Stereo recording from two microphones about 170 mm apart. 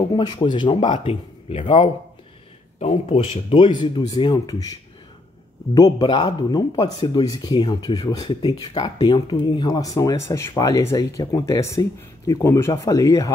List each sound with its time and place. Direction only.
0.1 s speech: 25° left (ahead or behind)
5.8 s speech: 20° left (ahead or behind)